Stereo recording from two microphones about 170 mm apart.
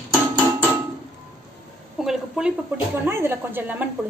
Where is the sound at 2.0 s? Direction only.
Centre (ahead or behind).